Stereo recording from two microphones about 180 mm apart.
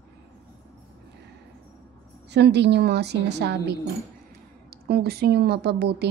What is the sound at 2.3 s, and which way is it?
A woman's voice, 70° right (ahead or behind).